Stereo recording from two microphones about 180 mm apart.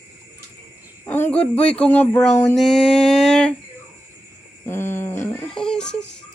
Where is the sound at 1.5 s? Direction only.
35° left (ahead or behind).